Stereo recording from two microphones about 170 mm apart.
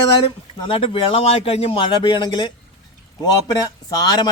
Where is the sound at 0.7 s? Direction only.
30° left (ahead or behind).